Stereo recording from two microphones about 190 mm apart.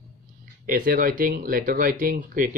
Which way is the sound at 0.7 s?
45° right (ahead or behind).